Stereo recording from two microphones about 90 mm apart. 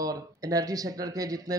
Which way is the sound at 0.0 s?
40° right (ahead or behind).